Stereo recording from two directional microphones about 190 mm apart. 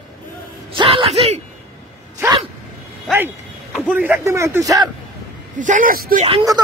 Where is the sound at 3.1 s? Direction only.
10° right (ahead or behind).